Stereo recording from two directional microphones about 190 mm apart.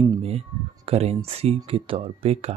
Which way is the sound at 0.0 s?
30° right (ahead or behind).